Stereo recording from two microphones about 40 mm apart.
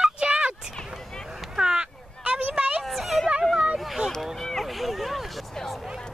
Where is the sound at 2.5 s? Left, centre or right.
Right.